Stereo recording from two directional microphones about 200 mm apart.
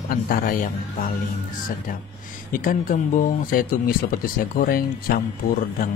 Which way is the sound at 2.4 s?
45° left (ahead or behind).